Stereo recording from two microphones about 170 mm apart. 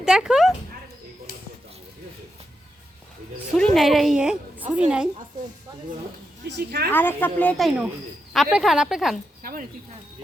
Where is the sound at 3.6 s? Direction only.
5° left (ahead or behind).